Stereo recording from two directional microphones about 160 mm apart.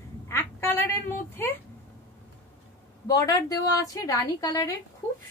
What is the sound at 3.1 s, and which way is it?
A woman's voice, 25° left (ahead or behind).